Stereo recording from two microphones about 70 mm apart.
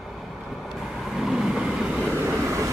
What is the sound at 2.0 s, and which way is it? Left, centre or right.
Vehicle, right.